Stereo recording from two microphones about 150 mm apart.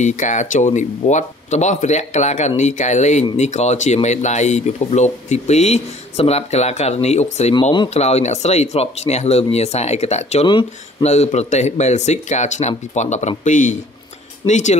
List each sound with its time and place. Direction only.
0.0 s speech: 55° left (ahead or behind)
10.4 s speech: 35° left (ahead or behind)
11.1 s speech: 45° left (ahead or behind)